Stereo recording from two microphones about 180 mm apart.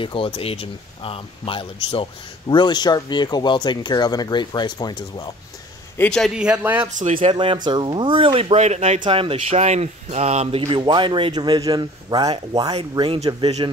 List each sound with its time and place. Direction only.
0.0 s speech: 30° left (ahead or behind)
5.9 s speech: 5° left (ahead or behind)
7.2 s speech: 30° right (ahead or behind)
10.7 s speech: 25° right (ahead or behind)